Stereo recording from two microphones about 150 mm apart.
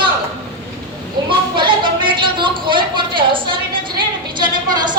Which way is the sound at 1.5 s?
30° right (ahead or behind).